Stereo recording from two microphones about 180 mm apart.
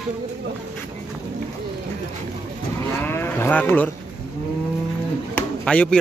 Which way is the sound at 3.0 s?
10° left (ahead or behind).